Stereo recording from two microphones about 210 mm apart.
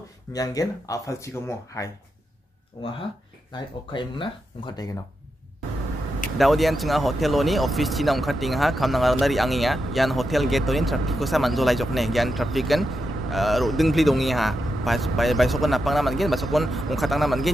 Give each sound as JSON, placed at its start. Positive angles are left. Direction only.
{"t": 0.3, "sound": "speech", "side_deg": 15}
{"t": 3.5, "sound": "speech", "side_deg": 20}
{"t": 6.3, "sound": "speech", "side_deg": 0}